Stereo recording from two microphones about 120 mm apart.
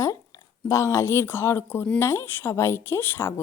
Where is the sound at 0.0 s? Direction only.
25° left (ahead or behind).